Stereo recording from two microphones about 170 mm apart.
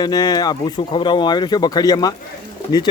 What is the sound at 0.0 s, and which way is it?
Speech, 25° left (ahead or behind).